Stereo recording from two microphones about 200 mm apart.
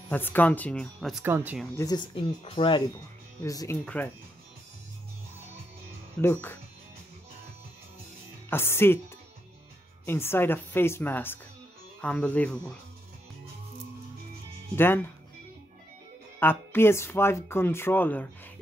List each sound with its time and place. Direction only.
0.1 s speech: 10° left (ahead or behind)
1.2 s speech: 10° right (ahead or behind)
1.8 s speech: 20° left (ahead or behind)
3.4 s speech: 15° left (ahead or behind)
6.2 s speech: 10° left (ahead or behind)
8.5 s speech: 10° left (ahead or behind)
10.0 s speech: 10° left (ahead or behind)
14.8 s speech: 10° left (ahead or behind)
16.3 s speech: 10° left (ahead or behind)